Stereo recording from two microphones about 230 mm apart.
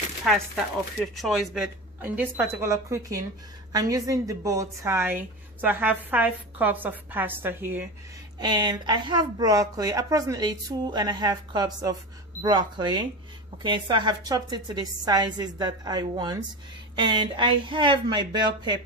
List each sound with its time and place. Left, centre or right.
0.2 s a woman's voice: centre